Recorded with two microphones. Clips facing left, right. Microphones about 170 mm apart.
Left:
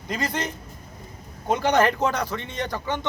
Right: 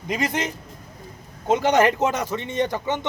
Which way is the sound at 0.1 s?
20° right (ahead or behind).